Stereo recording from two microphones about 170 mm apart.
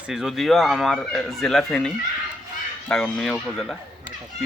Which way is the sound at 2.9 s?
5° left (ahead or behind).